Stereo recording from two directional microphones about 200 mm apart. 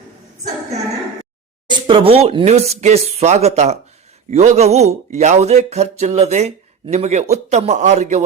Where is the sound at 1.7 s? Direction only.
25° right (ahead or behind).